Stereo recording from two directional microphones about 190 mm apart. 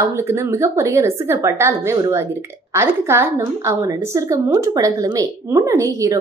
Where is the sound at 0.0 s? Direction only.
15° right (ahead or behind).